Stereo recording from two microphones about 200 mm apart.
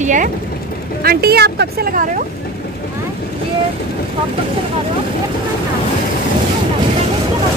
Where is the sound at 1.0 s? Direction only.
50° right (ahead or behind).